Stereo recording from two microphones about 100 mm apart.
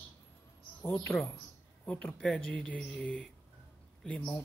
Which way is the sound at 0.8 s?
25° left (ahead or behind).